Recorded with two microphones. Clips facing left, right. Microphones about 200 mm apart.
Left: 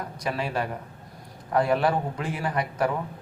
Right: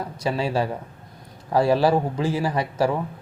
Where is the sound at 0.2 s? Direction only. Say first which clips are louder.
Right 5 dB; 30° right (ahead or behind).